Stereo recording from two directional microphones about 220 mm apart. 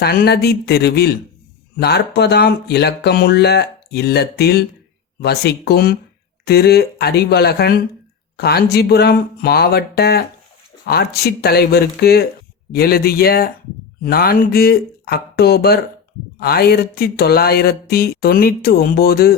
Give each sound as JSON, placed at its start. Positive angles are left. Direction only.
{"t": 0.0, "sound": "speech", "side_deg": 45}